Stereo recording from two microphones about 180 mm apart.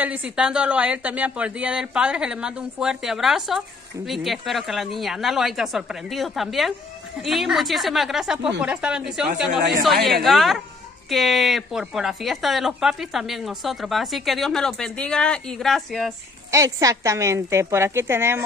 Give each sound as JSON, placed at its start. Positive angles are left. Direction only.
{"t": 0.0, "sound": "a woman's voice", "side_deg": -10}
{"t": 16.4, "sound": "a woman's voice", "side_deg": -15}